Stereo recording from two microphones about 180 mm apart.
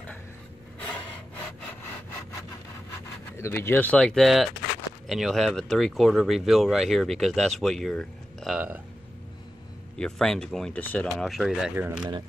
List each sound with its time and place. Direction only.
3.3 s speech: 15° left (ahead or behind)
8.5 s speech: 10° right (ahead or behind)
9.9 s speech: 5° left (ahead or behind)